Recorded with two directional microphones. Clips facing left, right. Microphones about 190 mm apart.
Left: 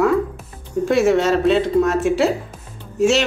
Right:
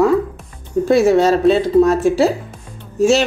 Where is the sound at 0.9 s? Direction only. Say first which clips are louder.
Right 3 dB; 35° right (ahead or behind).